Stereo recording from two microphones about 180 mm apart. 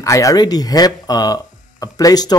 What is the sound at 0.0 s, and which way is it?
Speech, 20° left (ahead or behind).